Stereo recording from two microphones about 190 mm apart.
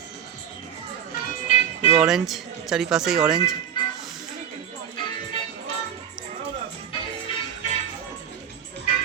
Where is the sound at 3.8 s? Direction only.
25° left (ahead or behind).